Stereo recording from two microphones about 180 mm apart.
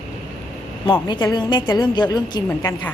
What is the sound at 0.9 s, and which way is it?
A woman's voice, 25° left (ahead or behind).